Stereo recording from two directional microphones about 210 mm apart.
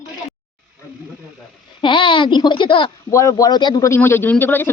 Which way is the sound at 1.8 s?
25° left (ahead or behind).